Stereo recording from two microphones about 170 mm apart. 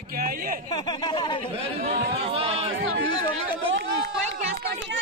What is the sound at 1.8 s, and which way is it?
Speech, 35° right (ahead or behind).